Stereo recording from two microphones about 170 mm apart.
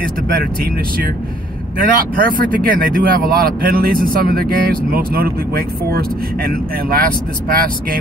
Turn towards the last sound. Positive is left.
turn(degrees=-55)  # may be behind; listen again after turning